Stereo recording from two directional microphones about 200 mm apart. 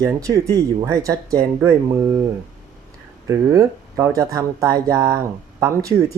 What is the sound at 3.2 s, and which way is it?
Speech, 15° right (ahead or behind).